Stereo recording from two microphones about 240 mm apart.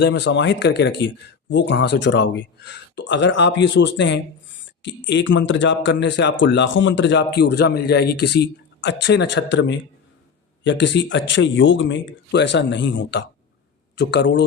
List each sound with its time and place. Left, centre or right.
0.0 s speech: left